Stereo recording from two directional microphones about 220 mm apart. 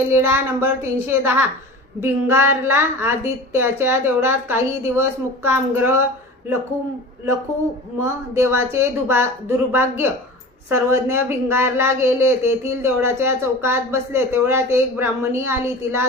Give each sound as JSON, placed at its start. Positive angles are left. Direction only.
{"t": 0.1, "sound": "speech", "side_deg": -10}
{"t": 8.0, "sound": "speech", "side_deg": -10}